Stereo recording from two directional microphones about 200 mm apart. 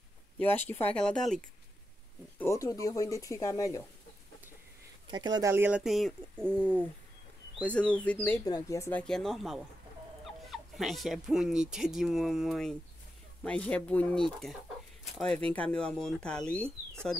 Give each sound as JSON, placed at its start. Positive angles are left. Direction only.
{"t": 0.4, "sound": "speech", "side_deg": 10}
{"t": 2.3, "sound": "speech", "side_deg": 15}
{"t": 5.0, "sound": "speech", "side_deg": -20}
{"t": 7.6, "sound": "speech", "side_deg": 5}
{"t": 9.0, "sound": "speech", "side_deg": 0}